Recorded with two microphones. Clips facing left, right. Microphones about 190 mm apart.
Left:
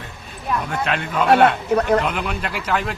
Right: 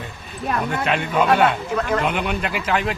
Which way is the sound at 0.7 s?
5° right (ahead or behind).